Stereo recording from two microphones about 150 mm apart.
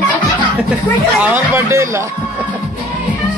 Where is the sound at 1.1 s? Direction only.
20° right (ahead or behind).